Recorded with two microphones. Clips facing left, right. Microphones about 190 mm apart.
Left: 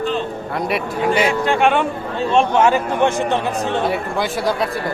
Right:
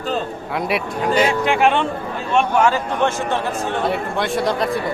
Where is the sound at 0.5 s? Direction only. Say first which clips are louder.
Even; centre (ahead or behind).